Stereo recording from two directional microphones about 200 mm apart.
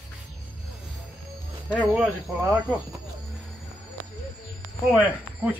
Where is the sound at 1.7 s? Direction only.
5° right (ahead or behind).